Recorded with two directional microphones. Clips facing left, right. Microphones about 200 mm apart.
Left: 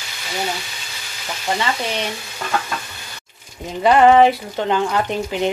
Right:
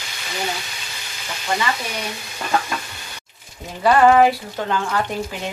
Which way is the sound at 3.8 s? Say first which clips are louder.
Left 2 dB; 20° left (ahead or behind).